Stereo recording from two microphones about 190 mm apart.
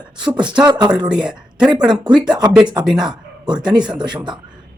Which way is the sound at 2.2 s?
25° right (ahead or behind).